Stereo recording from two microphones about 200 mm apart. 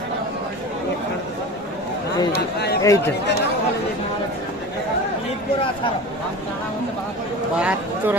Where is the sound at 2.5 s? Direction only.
55° left (ahead or behind).